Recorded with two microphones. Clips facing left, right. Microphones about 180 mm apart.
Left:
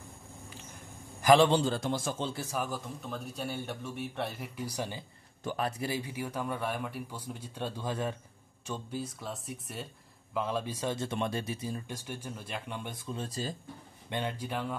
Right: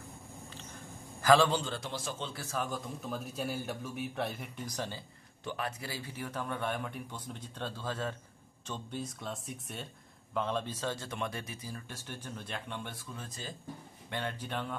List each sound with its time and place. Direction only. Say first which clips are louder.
1.2 s a man's voice: left 3 dB; 20° left (ahead or behind)
1.6 s a man's voice: left 8 dB; 45° left (ahead or behind)
2.3 s speech: left 2 dB; 15° left (ahead or behind)
3.0 s speech: right 1 dB; 5° right (ahead or behind); by 5.0 s 15° left (ahead or behind)
5.4 s speech: left 4 dB; 45° left (ahead or behind)
5.7 s speech: left 6 dB; 20° left (ahead or behind)
11.1 s speech: left 5 dB; 30° left (ahead or behind)
14.0 s speech: left 3 dB; 15° left (ahead or behind)